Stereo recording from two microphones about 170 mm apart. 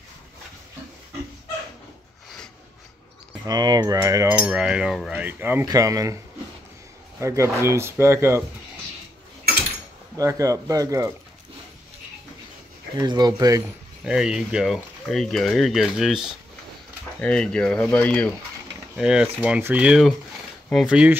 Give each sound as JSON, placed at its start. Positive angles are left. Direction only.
{"t": 3.4, "sound": "speech", "side_deg": -25}
{"t": 4.4, "sound": "speech", "side_deg": -5}
{"t": 7.2, "sound": "speech", "side_deg": -15}
{"t": 10.1, "sound": "speech", "side_deg": -20}
{"t": 12.9, "sound": "speech", "side_deg": -25}
{"t": 14.0, "sound": "speech", "side_deg": -5}
{"t": 18.9, "sound": "speech", "side_deg": -5}